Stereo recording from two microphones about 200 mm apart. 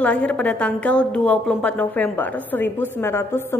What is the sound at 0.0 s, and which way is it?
A woman's voice, 5° left (ahead or behind).